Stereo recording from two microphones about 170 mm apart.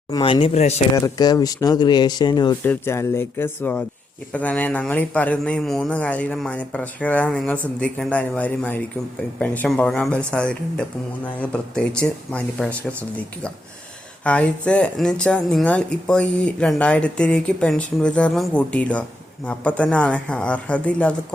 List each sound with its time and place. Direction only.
0.1 s speech: 25° left (ahead or behind)
0.9 s a man's voice: 20° left (ahead or behind); by 12.7 s 5° left (ahead or behind)
14.3 s a man's voice: 5° left (ahead or behind)